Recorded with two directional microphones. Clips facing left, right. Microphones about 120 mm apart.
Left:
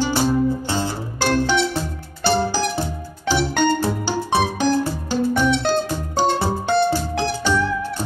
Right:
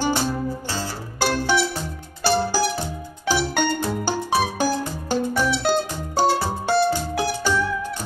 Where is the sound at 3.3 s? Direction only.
10° right (ahead or behind).